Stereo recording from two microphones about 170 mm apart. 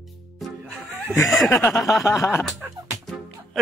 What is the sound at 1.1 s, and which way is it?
Speech, 20° left (ahead or behind).